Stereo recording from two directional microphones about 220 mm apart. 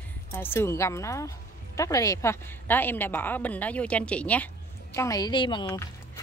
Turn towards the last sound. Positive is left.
turn(degrees=20)  # may be behind; listen again after turning